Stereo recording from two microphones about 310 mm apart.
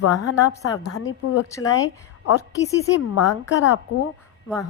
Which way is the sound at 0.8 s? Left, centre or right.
Left.